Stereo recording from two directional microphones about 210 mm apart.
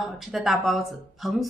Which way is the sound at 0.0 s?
Centre (ahead or behind).